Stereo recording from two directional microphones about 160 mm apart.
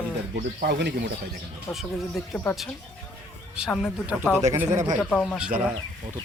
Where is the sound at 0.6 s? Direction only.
90° right.